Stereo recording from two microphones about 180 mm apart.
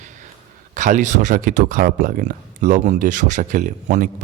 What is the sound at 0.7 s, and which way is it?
Speech, 45° right (ahead or behind).